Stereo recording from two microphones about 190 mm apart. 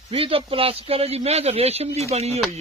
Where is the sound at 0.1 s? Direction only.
30° right (ahead or behind).